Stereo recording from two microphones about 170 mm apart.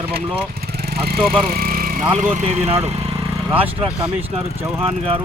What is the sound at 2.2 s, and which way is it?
Speech, 45° right (ahead or behind).